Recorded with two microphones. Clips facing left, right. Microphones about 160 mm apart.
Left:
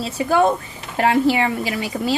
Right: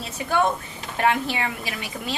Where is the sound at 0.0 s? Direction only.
35° left (ahead or behind).